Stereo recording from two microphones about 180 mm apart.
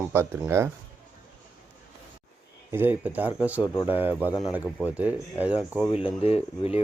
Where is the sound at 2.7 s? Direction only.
10° right (ahead or behind).